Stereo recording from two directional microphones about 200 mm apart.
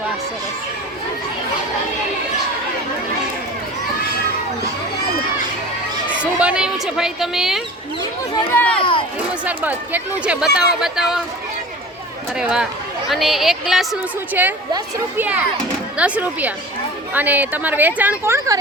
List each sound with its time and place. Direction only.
6.4 s speech: 5° right (ahead or behind)
8.3 s speech: 15° left (ahead or behind)
8.8 s speech: 25° left (ahead or behind)
9.1 s speech: 5° right (ahead or behind)
12.4 s a woman's voice: 5° right (ahead or behind)